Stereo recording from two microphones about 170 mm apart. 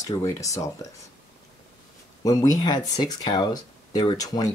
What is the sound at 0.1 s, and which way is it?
Speech, 20° left (ahead or behind).